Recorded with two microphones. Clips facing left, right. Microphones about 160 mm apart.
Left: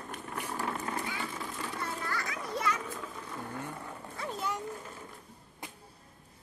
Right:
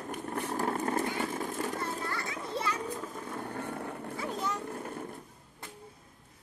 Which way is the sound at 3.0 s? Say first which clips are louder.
Right 3 dB; 45° right (ahead or behind).